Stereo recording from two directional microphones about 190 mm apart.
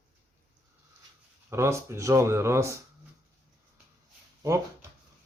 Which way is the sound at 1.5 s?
15° right (ahead or behind).